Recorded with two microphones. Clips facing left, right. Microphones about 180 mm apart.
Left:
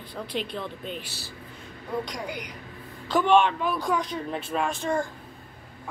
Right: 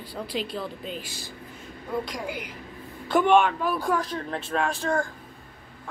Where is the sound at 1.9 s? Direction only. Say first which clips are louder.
Right 1 dB; centre (ahead or behind).